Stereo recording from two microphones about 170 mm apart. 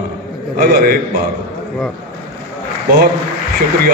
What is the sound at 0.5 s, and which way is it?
Speech, 60° right (ahead or behind).